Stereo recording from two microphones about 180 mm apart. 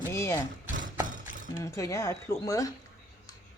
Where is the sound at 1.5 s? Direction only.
15° left (ahead or behind).